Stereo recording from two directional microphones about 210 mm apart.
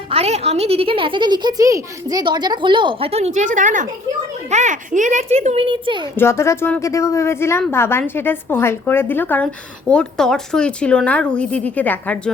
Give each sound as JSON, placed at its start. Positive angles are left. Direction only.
{"t": 0.1, "sound": "a woman's voice", "side_deg": -30}
{"t": 6.1, "sound": "a woman's voice", "side_deg": 10}